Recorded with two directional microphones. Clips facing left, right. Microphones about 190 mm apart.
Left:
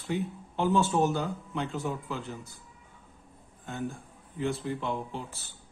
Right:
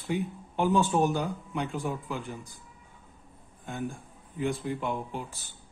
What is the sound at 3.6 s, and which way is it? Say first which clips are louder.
A man's voice: even; 15° right (ahead or behind).